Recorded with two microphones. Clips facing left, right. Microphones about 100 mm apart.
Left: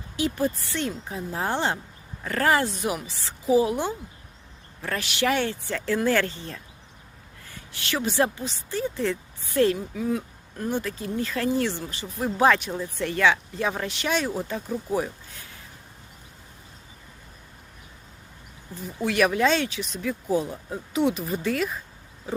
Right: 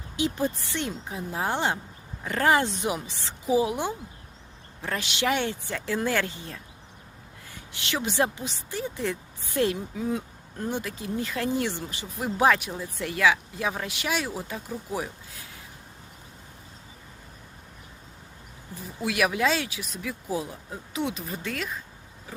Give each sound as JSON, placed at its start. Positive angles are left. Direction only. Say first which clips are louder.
{"t": 0.2, "sound": "speech", "louder": "left 2 dB", "side_deg": -20}
{"t": 7.7, "sound": "speech", "louder": "left 2 dB", "side_deg": -20}
{"t": 19.0, "sound": "speech", "louder": "left 3 dB", "side_deg": -5}